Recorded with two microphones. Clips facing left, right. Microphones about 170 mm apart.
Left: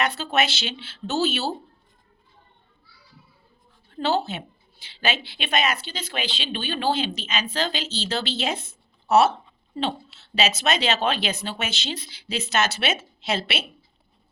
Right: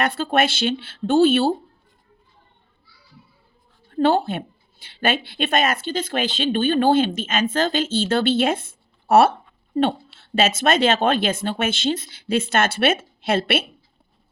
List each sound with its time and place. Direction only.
0.0 s a woman's voice: 50° right (ahead or behind)
3.9 s a woman's voice: 55° right (ahead or behind)